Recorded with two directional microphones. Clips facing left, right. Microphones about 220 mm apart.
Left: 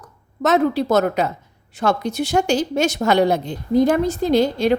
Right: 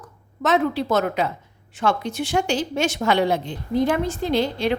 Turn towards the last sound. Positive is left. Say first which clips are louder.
# left 5 dB
turn(degrees=40)  # may be behind; listen again after turning